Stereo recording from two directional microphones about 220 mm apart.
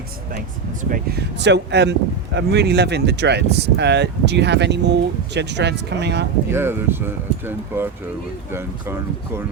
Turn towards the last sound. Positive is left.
turn(degrees=-10)  # may be behind; listen again after turning